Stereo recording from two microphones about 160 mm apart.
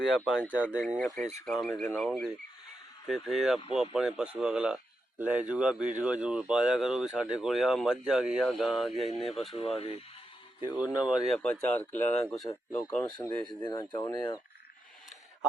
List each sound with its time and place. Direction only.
0.3 s speech: 5° right (ahead or behind)
1.1 s speech: 50° right (ahead or behind)
1.5 s a man's voice: centre (ahead or behind)
9.0 s speech: 40° left (ahead or behind)
9.3 s a man's voice: centre (ahead or behind)
9.6 s speech: 40° left (ahead or behind)
10.8 s speech: 10° right (ahead or behind)
11.4 s speech: 10° left (ahead or behind)
13.7 s speech: 30° left (ahead or behind)